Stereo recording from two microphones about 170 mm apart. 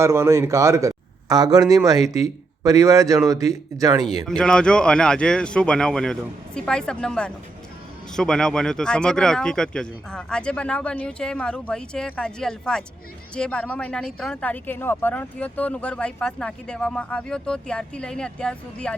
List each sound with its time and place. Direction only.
0.0 s a man's voice: 15° right (ahead or behind)
4.3 s speech: 5° left (ahead or behind)